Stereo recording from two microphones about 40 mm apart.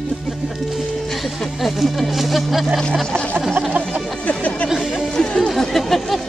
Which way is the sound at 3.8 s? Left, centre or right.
Right.